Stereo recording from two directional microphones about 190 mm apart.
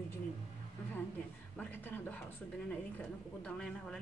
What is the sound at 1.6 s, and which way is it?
A woman's voice, 10° left (ahead or behind).